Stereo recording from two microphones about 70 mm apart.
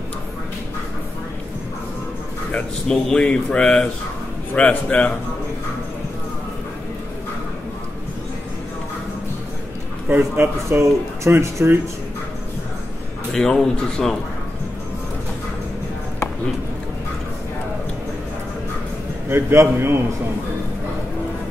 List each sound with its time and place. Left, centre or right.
2.9 s speech: centre
10.0 s a man's voice: right
10.7 s speech: right
13.3 s speech: centre
19.2 s speech: right